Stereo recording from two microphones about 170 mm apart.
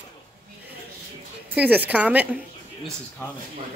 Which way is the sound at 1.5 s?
10° right (ahead or behind).